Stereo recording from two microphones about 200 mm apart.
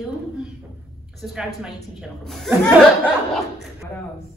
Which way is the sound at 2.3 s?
Centre (ahead or behind).